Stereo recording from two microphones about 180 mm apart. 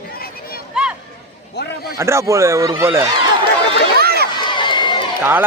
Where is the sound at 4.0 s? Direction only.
60° right (ahead or behind).